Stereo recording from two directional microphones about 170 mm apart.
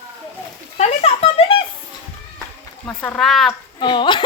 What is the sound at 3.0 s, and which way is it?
Speech, 5° left (ahead or behind).